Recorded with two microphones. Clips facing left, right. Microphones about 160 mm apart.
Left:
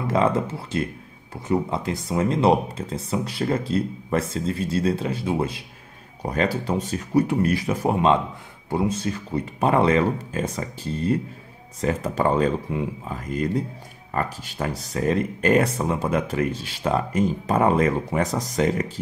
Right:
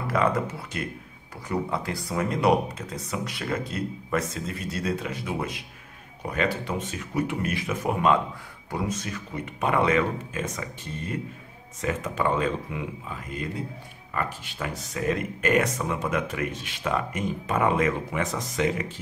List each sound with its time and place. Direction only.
0.0 s speech: 25° left (ahead or behind)